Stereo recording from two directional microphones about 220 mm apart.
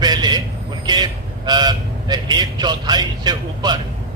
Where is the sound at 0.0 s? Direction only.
20° right (ahead or behind).